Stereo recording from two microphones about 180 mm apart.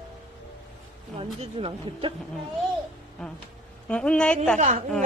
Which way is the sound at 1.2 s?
30° right (ahead or behind).